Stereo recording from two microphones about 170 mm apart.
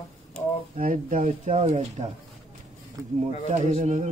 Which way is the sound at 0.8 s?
50° right (ahead or behind).